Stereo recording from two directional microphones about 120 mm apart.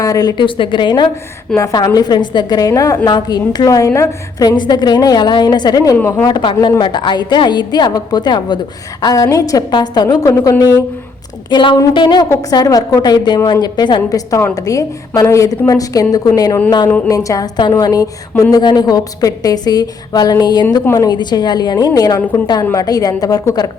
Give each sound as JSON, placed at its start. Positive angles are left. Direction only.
{"t": 0.0, "sound": "a woman's voice", "side_deg": 30}
{"t": 1.5, "sound": "a woman's voice", "side_deg": 30}
{"t": 6.0, "sound": "speech", "side_deg": 15}
{"t": 6.2, "sound": "a woman's voice", "side_deg": 40}
{"t": 11.5, "sound": "a woman's voice", "side_deg": 40}
{"t": 14.3, "sound": "a woman's voice", "side_deg": 25}